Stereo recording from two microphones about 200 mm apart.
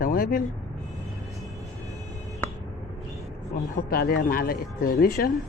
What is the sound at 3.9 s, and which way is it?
Speech, 50° left (ahead or behind).